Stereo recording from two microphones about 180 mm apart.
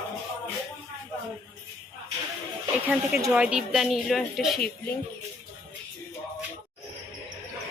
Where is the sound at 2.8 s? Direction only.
10° right (ahead or behind).